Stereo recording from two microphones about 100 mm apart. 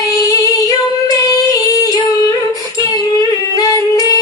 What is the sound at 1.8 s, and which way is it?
Music, 40° left (ahead or behind).